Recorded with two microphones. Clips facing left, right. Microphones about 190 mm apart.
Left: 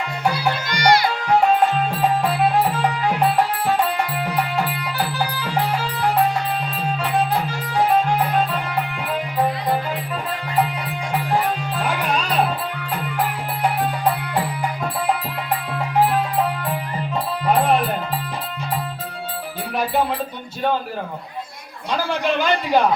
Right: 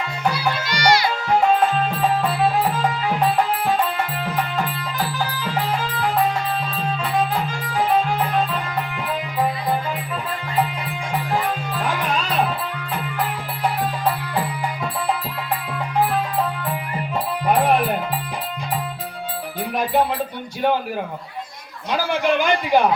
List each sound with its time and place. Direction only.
0.3 s music: 55° left (ahead or behind)
21.9 s a man's voice: 15° right (ahead or behind)